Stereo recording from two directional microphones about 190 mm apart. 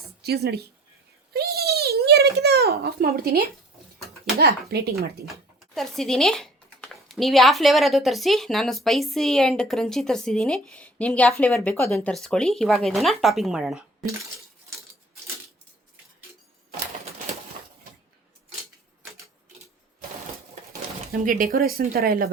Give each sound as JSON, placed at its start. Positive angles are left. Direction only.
{"t": 0.2, "sound": "speech", "side_deg": -55}
{"t": 1.3, "sound": "a sound", "side_deg": -55}
{"t": 4.4, "sound": "speech", "side_deg": -55}
{"t": 5.3, "sound": "speech", "side_deg": 0}
{"t": 21.1, "sound": "speech", "side_deg": -45}